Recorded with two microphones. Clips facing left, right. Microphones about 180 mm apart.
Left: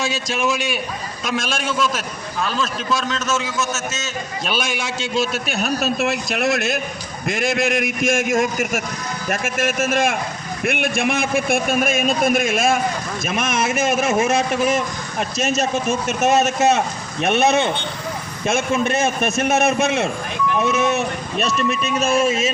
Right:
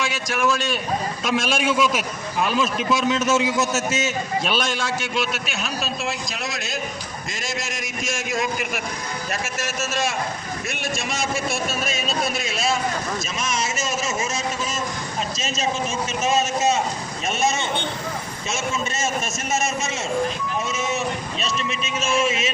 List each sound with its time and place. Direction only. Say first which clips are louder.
0.3 s a man's voice: right 2 dB; 20° left (ahead or behind)
1.2 s a man's voice: even; 5° right (ahead or behind)
4.4 s a man's voice: left 3 dB; 5° left (ahead or behind)
5.3 s a man's voice: left 6 dB; 60° left (ahead or behind)